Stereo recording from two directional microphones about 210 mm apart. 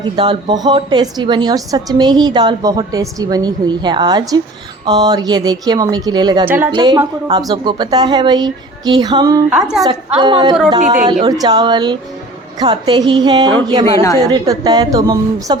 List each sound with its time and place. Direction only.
0.2 s a woman's voice: 20° right (ahead or behind)
9.5 s a woman's voice: 5° right (ahead or behind)
9.8 s a woman's voice: 20° right (ahead or behind)